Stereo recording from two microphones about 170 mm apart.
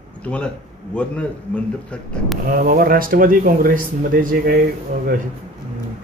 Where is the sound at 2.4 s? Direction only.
65° right (ahead or behind).